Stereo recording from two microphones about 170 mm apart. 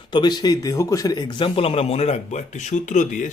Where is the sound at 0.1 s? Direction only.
25° left (ahead or behind).